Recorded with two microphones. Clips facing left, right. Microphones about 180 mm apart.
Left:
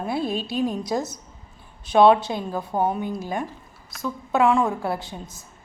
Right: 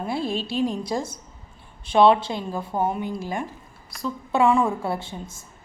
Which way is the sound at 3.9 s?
Centre (ahead or behind).